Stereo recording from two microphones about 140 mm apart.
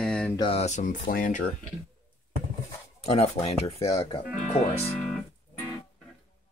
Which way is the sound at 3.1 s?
50° left (ahead or behind).